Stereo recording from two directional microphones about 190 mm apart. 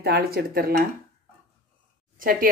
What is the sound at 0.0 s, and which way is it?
Speech, 55° right (ahead or behind).